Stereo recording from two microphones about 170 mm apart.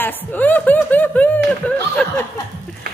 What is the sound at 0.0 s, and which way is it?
Speech, 10° left (ahead or behind).